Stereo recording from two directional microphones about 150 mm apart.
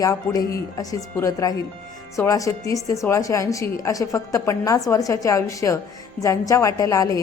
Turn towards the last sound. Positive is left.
turn(degrees=20)  # may be behind; listen again after turning